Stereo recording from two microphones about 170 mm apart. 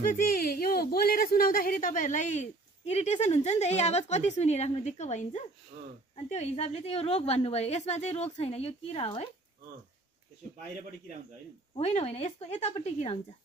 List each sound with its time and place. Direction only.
0.0 s speech: 55° left (ahead or behind)
5.7 s speech: 35° right (ahead or behind)
6.2 s a woman's voice: 40° left (ahead or behind)
11.7 s a woman's voice: 40° left (ahead or behind)